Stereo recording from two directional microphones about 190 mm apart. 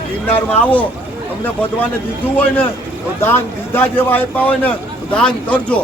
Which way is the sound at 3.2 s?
10° left (ahead or behind).